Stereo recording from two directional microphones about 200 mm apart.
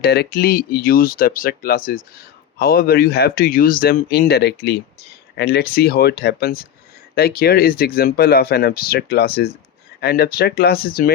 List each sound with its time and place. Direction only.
0.0 s speech: 50° left (ahead or behind)